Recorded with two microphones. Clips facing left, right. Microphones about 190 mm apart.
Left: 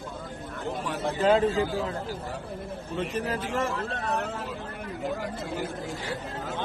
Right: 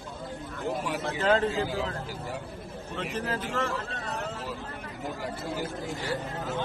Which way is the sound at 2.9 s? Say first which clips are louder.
Left 2 dB; 15° left (ahead or behind).